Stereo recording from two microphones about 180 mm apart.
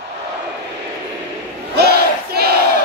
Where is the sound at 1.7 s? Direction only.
65° right (ahead or behind).